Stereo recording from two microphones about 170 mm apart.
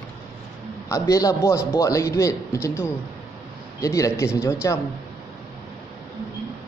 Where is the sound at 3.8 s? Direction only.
20° left (ahead or behind).